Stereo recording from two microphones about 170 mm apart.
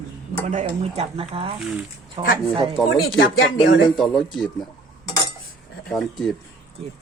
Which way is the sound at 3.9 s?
Centre (ahead or behind).